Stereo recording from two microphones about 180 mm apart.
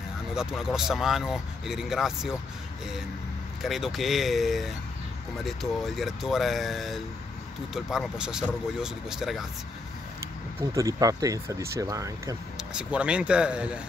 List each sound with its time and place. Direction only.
0.3 s speech: 5° right (ahead or behind)
3.6 s speech: centre (ahead or behind)
10.7 s speech: 20° right (ahead or behind)
12.5 s speech: 5° right (ahead or behind)